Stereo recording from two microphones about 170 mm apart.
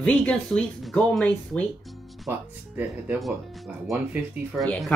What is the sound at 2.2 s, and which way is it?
Speech, 10° right (ahead or behind).